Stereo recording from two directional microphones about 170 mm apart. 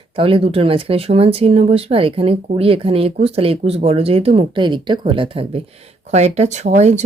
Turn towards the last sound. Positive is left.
turn(degrees=-40)  # may be behind; listen again after turning